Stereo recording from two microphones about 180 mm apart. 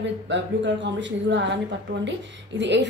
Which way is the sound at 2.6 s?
75° right (ahead or behind).